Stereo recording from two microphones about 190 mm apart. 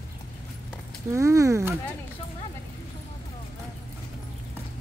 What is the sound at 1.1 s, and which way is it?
Speech, 15° right (ahead or behind).